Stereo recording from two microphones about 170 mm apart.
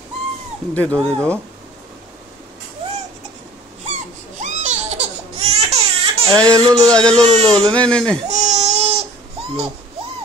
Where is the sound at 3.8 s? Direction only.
45° right (ahead or behind).